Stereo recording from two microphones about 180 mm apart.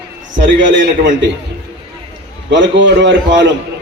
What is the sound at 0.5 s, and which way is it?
Speech, 90° right.